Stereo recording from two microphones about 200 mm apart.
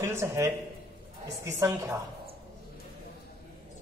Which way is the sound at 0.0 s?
15° right (ahead or behind).